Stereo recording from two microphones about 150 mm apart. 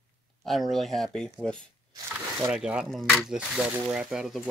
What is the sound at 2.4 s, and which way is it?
Speech, 5° right (ahead or behind).